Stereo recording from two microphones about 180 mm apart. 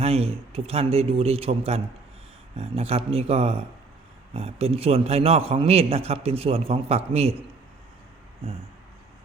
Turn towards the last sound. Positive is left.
turn(degrees=-35)  # may be behind; listen again after turning